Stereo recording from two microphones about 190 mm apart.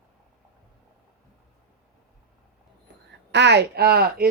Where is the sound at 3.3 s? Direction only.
65° right (ahead or behind).